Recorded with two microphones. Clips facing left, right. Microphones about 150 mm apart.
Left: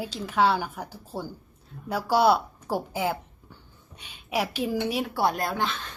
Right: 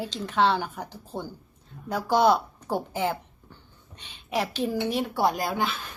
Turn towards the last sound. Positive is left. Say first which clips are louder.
# even
turn(degrees=-5)  # may be behind; listen again after turning